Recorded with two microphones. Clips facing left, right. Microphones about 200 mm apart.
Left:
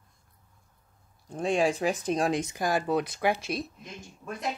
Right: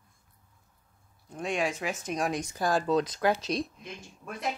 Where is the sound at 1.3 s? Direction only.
30° left (ahead or behind); by 4.5 s centre (ahead or behind).